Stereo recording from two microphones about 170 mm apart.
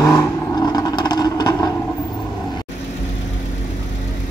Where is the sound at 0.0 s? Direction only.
15° left (ahead or behind).